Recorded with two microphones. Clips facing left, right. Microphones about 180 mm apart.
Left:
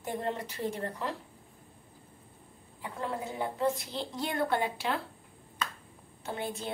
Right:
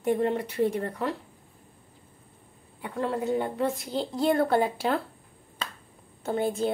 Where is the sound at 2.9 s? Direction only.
65° right (ahead or behind).